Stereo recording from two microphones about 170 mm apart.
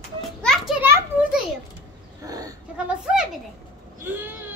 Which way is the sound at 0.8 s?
10° right (ahead or behind).